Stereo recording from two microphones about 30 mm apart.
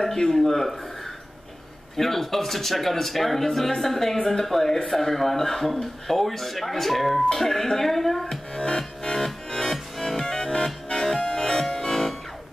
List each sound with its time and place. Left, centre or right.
0.0 s speech: centre
2.0 s speech: centre
7.3 s speech: centre
8.5 s music: left
9.7 s music: centre
10.2 s music: left